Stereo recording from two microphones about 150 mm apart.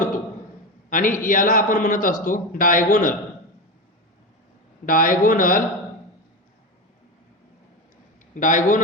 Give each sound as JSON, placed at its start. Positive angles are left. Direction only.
{"t": 0.9, "sound": "a man's voice", "side_deg": 65}
{"t": 4.9, "sound": "speech", "side_deg": 65}
{"t": 8.4, "sound": "a man's voice", "side_deg": 60}